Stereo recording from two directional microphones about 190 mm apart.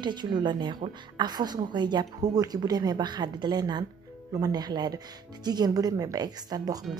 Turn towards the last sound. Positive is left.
turn(degrees=-20)  # may be behind; listen again after turning